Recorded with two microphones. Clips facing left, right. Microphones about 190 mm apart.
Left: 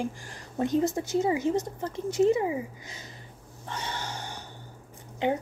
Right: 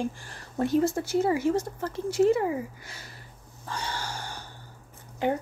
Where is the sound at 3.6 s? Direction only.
20° left (ahead or behind).